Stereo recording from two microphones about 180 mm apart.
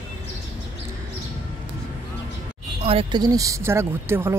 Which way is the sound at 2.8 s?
25° right (ahead or behind).